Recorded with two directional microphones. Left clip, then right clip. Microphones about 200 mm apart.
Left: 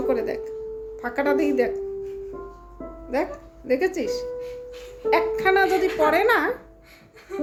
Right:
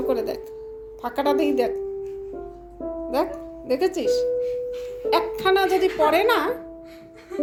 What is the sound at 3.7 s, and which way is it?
A woman's voice, 10° left (ahead or behind).